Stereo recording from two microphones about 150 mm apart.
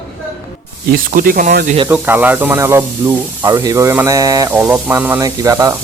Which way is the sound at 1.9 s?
10° right (ahead or behind).